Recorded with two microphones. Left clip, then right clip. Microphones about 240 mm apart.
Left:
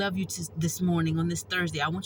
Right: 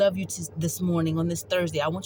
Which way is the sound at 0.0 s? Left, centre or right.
Right.